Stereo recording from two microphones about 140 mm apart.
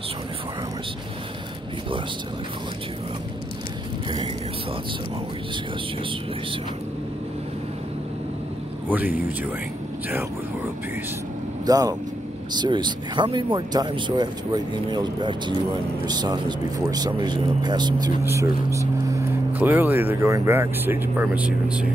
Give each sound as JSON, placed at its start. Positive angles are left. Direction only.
{"t": 8.8, "sound": "speech", "side_deg": -15}
{"t": 11.6, "sound": "speech", "side_deg": -25}
{"t": 18.2, "sound": "speech", "side_deg": -20}